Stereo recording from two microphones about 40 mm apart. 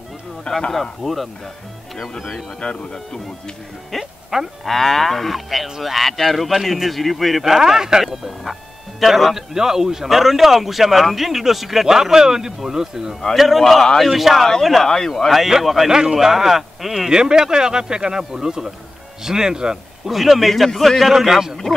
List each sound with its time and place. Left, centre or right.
0.5 s speech: left
1.0 s speech: centre
2.6 s speech: left
4.0 s a sound: centre
4.6 s a man's voice: centre
13.4 s speech: centre
14.9 s speech: centre
15.9 s a man's voice: centre
17.1 s a man's voice: centre
20.1 s speech: centre